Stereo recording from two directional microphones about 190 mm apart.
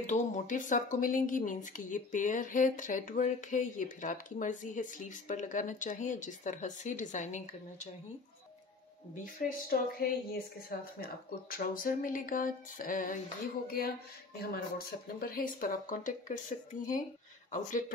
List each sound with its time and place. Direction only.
0.0 s speech: 40° left (ahead or behind)
9.1 s speech: 50° left (ahead or behind)
17.5 s speech: 45° left (ahead or behind)